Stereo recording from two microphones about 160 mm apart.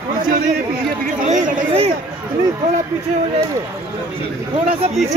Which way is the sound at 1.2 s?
40° right (ahead or behind).